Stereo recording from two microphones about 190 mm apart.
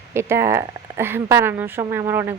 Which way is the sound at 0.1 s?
15° right (ahead or behind).